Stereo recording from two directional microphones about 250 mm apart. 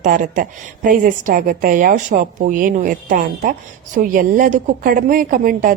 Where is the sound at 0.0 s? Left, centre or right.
Right.